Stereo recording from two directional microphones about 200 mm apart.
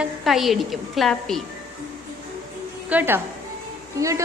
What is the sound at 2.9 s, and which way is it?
A woman's voice, 10° right (ahead or behind).